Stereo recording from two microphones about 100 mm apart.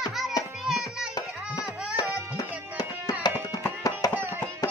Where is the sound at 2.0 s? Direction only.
40° left (ahead or behind).